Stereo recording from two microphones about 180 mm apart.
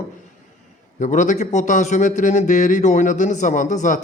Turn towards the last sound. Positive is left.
turn(degrees=45)  # may be behind; listen again after turning